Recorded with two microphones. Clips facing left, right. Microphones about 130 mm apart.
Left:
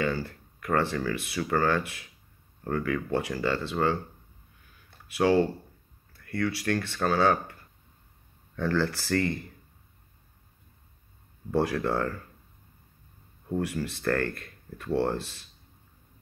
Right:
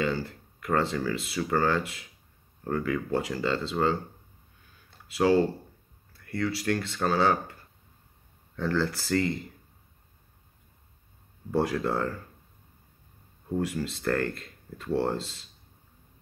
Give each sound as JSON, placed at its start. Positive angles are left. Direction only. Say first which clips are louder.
{"t": 0.0, "sound": "speech", "louder": "even", "side_deg": -20}
{"t": 5.0, "sound": "speech", "louder": "even", "side_deg": -25}
{"t": 8.5, "sound": "speech", "louder": "left 1 dB", "side_deg": -20}
{"t": 11.5, "sound": "speech", "louder": "even", "side_deg": -20}
{"t": 13.6, "sound": "speech", "louder": "right 1 dB", "side_deg": -20}